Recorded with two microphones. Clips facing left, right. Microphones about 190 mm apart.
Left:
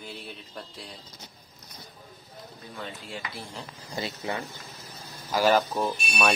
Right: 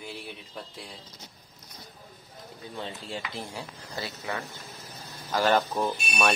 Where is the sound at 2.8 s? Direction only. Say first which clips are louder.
Right 2 dB; 25° right (ahead or behind).